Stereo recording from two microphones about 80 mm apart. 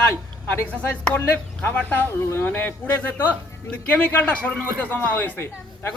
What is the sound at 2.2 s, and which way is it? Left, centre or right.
A man's voice, left.